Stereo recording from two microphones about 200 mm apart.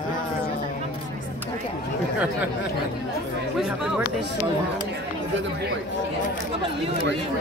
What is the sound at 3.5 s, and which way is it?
Speech, 5° right (ahead or behind).